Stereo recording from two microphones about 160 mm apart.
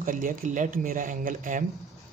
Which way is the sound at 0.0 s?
55° right (ahead or behind).